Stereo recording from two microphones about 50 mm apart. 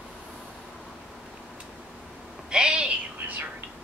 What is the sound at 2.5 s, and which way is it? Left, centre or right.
Owl, centre.